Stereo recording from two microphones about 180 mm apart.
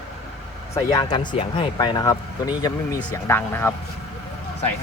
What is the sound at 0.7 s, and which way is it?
Speech, 20° left (ahead or behind).